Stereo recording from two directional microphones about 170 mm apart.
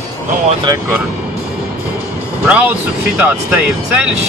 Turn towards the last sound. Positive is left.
turn(degrees=-10)  # may be behind; listen again after turning